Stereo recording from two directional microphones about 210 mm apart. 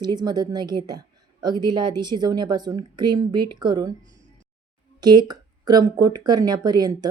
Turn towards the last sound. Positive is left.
turn(degrees=-20)  # may be behind; listen again after turning